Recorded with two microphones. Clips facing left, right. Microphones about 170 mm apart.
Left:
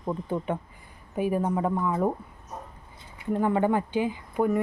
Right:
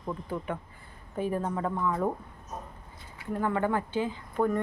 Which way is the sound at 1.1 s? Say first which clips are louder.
Left 4 dB; 10° left (ahead or behind).